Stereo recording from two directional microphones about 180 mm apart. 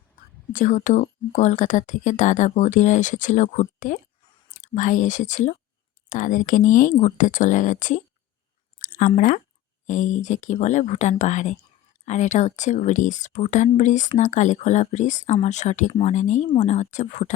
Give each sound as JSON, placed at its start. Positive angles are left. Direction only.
{"t": 0.5, "sound": "speech", "side_deg": 45}